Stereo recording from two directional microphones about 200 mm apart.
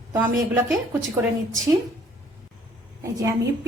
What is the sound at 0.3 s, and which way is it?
Speech, 5° right (ahead or behind).